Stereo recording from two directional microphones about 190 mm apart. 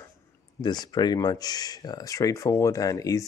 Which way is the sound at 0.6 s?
20° left (ahead or behind).